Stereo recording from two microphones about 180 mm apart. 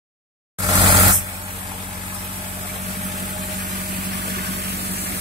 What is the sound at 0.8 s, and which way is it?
Vehicle, 25° right (ahead or behind).